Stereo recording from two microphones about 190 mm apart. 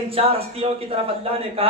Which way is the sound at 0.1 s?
30° right (ahead or behind).